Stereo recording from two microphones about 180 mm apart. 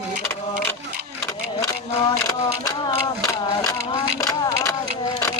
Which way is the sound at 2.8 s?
20° left (ahead or behind).